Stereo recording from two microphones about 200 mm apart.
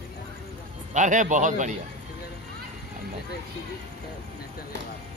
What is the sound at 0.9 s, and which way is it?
Speech, 40° right (ahead or behind).